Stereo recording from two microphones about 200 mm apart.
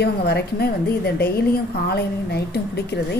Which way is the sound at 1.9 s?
55° left (ahead or behind).